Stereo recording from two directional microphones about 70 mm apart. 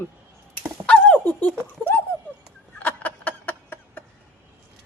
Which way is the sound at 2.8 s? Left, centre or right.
Left.